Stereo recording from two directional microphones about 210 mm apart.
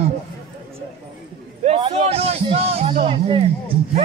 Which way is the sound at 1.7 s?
30° right (ahead or behind).